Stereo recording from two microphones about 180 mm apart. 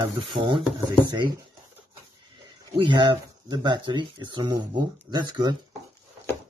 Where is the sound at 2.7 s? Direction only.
30° right (ahead or behind).